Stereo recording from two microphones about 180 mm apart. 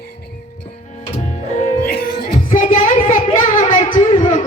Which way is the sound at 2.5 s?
45° left (ahead or behind).